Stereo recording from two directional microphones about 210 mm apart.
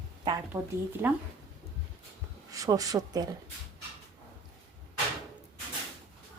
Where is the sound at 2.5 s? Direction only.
15° right (ahead or behind).